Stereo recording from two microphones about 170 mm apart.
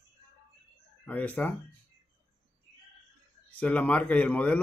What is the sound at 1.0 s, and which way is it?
Speech, 10° left (ahead or behind).